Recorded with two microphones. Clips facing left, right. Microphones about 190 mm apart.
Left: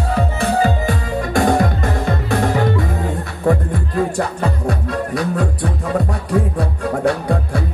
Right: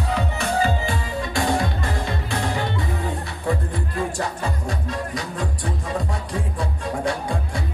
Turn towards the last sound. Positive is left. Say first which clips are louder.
# left 7 dB
turn(degrees=60)  # may be behind; listen again after turning